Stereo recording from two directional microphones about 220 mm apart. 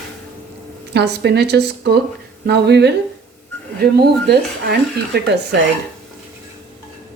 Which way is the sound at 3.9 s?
45° right (ahead or behind).